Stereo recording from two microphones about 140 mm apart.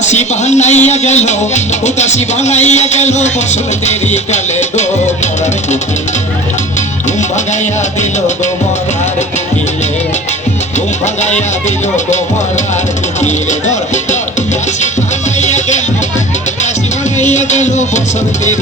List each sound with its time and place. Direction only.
0.0 s music: 55° left (ahead or behind)
7.2 s music: 60° left (ahead or behind)
11.0 s music: 55° left (ahead or behind)
13.2 s speech: 60° left (ahead or behind)
15.4 s music: 55° left (ahead or behind)
17.2 s music: 55° left (ahead or behind)